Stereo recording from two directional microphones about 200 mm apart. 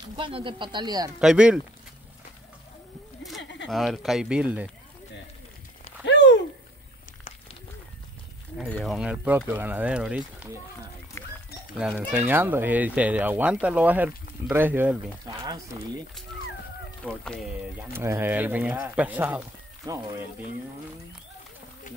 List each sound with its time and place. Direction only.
0.1 s speech: 25° right (ahead or behind)
1.2 s speech: 5° right (ahead or behind)
3.6 s speech: centre (ahead or behind)
6.0 s a sound: 60° left (ahead or behind)
8.6 s speech: 5° left (ahead or behind)
8.9 s speech: 5° right (ahead or behind)
11.2 s a sound: 10° left (ahead or behind)
12.1 s speech: 10° right (ahead or behind)
17.0 s speech: 5° left (ahead or behind)
17.7 s speech: 10° right (ahead or behind)